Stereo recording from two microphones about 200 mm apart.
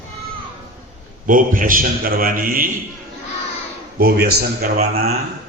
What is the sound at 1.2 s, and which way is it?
A man's voice, 40° right (ahead or behind).